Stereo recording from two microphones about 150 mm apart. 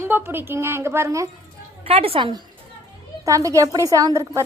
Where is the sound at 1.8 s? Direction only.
40° right (ahead or behind).